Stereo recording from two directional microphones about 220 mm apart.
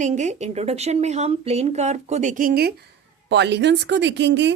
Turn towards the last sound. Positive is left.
turn(degrees=-55)  # may be behind; listen again after turning